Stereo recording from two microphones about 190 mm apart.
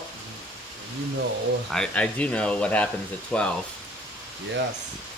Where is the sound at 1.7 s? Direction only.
5° left (ahead or behind).